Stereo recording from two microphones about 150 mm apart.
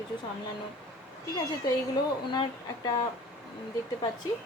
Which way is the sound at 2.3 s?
25° left (ahead or behind).